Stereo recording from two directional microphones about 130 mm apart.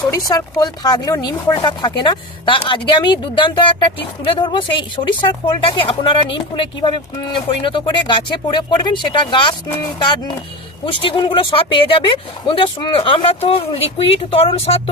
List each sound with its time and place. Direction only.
0.1 s speech: 30° left (ahead or behind); by 14.8 s 50° left (ahead or behind)